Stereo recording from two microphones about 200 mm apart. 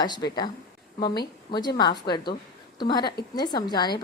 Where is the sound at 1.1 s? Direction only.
50° left (ahead or behind).